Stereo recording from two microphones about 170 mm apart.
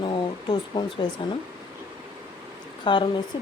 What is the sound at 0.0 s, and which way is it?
Speech, 30° left (ahead or behind).